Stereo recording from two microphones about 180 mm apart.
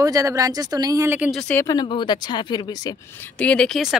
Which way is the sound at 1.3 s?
5° left (ahead or behind).